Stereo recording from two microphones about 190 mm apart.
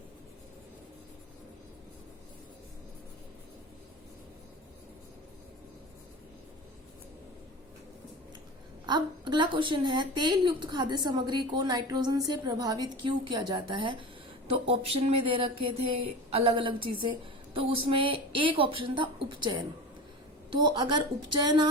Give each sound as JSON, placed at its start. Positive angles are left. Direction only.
{"t": 8.9, "sound": "a woman's voice", "side_deg": -25}